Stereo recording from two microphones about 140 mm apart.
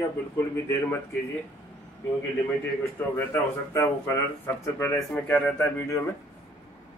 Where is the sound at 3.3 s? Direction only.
20° left (ahead or behind).